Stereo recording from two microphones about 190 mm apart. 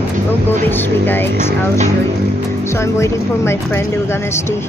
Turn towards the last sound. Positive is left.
turn(degrees=15)  # may be behind; listen again after turning